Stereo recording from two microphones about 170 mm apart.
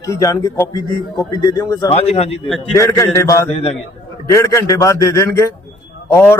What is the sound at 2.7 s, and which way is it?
Speech, 20° left (ahead or behind).